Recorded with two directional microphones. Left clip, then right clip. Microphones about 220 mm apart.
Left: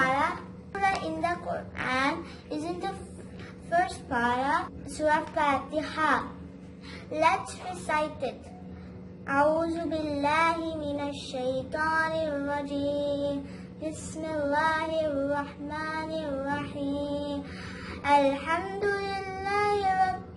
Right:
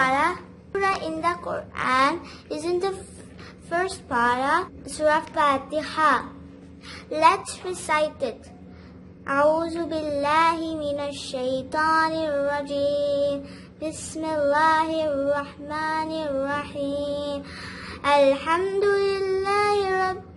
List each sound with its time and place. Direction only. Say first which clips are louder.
0.0 s a sound: right 4 dB; 55° right (ahead or behind)
0.7 s child singing: right 4 dB; 50° right (ahead or behind)
1.7 s speech: right 8 dB; 50° right (ahead or behind)
3.7 s child singing: right 1 dB; 50° right (ahead or behind)
9.2 s a woman's voice: right 4 dB; 50° right (ahead or behind)
9.9 s child singing: right 6 dB; 55° right (ahead or behind)